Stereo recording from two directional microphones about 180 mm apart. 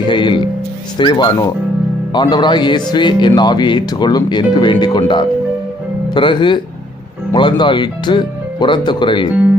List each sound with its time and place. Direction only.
0.1 s music: 25° left (ahead or behind)
0.9 s speech: 25° left (ahead or behind)